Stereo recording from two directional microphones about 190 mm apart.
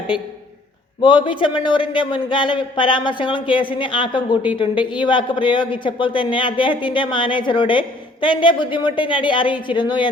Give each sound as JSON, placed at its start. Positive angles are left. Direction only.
{"t": 1.0, "sound": "speech", "side_deg": 25}